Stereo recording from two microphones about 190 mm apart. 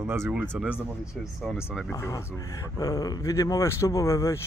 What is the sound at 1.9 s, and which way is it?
Speech, 15° left (ahead or behind).